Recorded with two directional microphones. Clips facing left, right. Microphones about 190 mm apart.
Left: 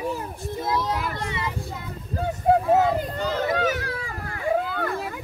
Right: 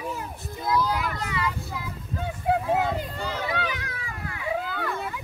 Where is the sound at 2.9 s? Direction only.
45° left (ahead or behind).